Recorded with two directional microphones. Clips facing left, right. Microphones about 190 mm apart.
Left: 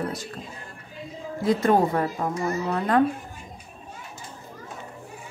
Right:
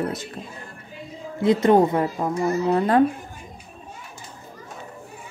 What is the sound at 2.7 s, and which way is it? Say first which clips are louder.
Speech: right 3 dB; 30° right (ahead or behind).